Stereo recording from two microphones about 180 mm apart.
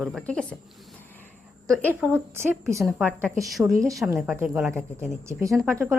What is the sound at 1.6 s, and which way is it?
Speech, 5° left (ahead or behind).